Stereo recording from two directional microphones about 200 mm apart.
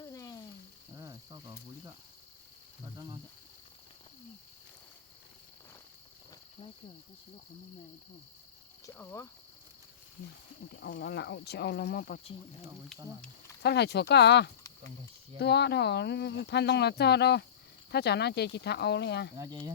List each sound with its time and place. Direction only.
0.0 s a sound: 20° left (ahead or behind)
0.9 s cricket: 20° right (ahead or behind)
8.9 s speech: 10° left (ahead or behind)
10.7 s speech: 50° left (ahead or behind)
13.6 s speech: 55° left (ahead or behind)
19.4 s speech: 20° right (ahead or behind)